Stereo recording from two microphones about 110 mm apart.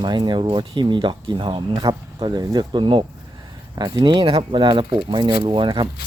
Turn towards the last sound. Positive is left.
turn(degrees=-45)  # may be behind; listen again after turning